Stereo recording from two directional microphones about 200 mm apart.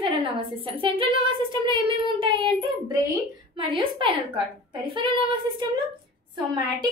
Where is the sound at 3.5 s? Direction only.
25° right (ahead or behind).